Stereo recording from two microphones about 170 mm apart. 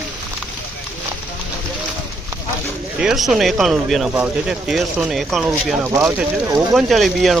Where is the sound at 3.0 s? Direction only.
5° right (ahead or behind).